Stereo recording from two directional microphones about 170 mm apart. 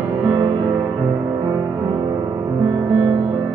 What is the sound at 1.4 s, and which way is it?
Music, 25° right (ahead or behind).